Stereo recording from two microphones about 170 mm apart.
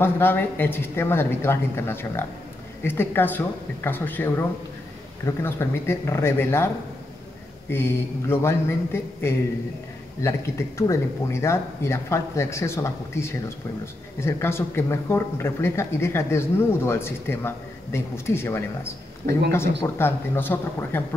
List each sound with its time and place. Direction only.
0.0 s speech: 10° left (ahead or behind)
7.7 s speech: 15° left (ahead or behind)